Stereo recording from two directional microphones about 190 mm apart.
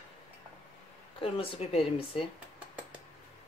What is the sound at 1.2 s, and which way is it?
Speech, 30° left (ahead or behind).